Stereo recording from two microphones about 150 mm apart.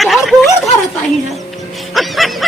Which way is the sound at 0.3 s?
Centre (ahead or behind).